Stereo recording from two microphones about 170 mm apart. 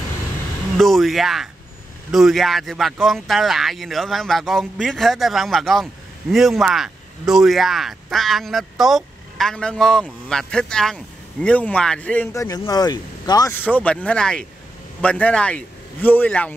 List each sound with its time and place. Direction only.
0.7 s speech: centre (ahead or behind); by 13.5 s 25° left (ahead or behind)
13.5 s a man's voice: 10° left (ahead or behind)